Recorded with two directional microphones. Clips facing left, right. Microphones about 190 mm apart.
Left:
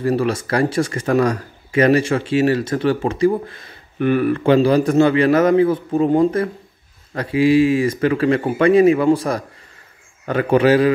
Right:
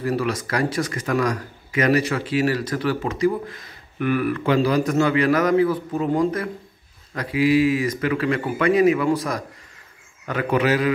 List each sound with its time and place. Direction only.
0.0 s a man's voice: 30° left (ahead or behind)